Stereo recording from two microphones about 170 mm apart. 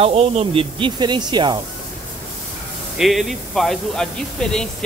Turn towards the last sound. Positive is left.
turn(degrees=5)  # may be behind; listen again after turning